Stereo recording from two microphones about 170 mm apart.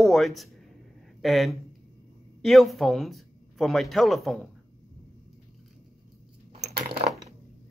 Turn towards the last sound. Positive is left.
turn(degrees=-30)  # may be behind; listen again after turning